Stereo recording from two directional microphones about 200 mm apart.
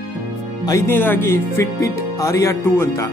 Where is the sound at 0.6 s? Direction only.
15° left (ahead or behind).